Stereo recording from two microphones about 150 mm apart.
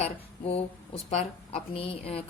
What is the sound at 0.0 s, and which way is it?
A woman's voice, 40° left (ahead or behind).